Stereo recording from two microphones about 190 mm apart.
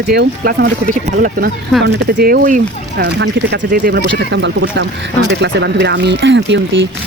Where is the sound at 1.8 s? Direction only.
60° right (ahead or behind).